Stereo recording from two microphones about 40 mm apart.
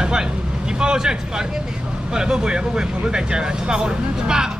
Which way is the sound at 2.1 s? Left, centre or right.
Centre.